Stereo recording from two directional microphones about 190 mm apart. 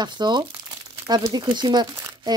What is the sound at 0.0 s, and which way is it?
Speech, 25° right (ahead or behind).